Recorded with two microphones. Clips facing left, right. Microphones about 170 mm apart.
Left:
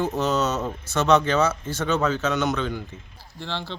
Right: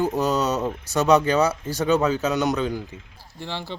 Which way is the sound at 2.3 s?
40° right (ahead or behind).